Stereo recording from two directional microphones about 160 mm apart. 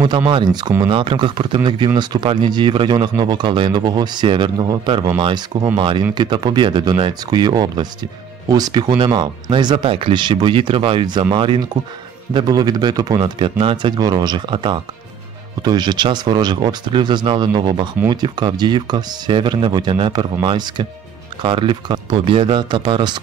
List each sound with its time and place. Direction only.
0.3 s speech: 30° right (ahead or behind)
12.4 s speech: 25° right (ahead or behind)